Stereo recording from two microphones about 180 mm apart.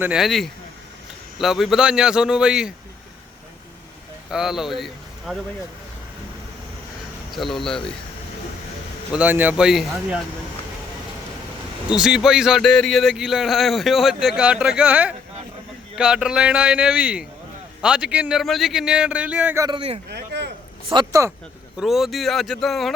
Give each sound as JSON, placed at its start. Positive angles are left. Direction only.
{"t": 0.0, "sound": "speech", "side_deg": -5}
{"t": 4.3, "sound": "speech", "side_deg": -5}
{"t": 7.3, "sound": "speech", "side_deg": 0}
{"t": 9.1, "sound": "speech", "side_deg": -10}
{"t": 11.9, "sound": "speech", "side_deg": -5}
{"t": 19.6, "sound": "a man's voice", "side_deg": -30}
{"t": 20.1, "sound": "a sound", "side_deg": -70}
{"t": 20.9, "sound": "speech", "side_deg": -20}
{"t": 21.8, "sound": "speech", "side_deg": 0}